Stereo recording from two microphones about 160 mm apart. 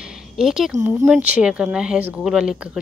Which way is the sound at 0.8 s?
15° right (ahead or behind).